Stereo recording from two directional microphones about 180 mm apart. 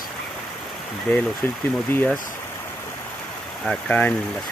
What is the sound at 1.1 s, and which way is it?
Speech, 10° left (ahead or behind).